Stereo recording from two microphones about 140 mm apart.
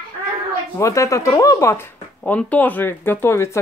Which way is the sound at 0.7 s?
20° left (ahead or behind).